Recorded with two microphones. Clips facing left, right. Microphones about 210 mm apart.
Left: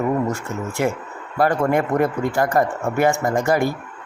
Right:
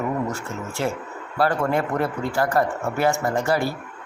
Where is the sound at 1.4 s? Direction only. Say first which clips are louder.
Left 3 dB; 15° left (ahead or behind).